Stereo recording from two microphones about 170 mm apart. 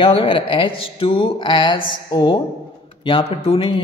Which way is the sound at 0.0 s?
35° left (ahead or behind).